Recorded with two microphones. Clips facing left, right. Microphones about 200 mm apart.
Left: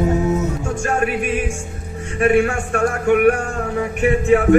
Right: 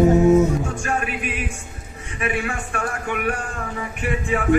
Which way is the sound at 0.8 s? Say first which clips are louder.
Left 6 dB; 50° left (ahead or behind).